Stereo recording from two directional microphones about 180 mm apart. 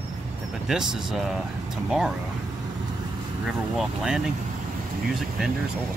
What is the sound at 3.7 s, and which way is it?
Speech, centre (ahead or behind).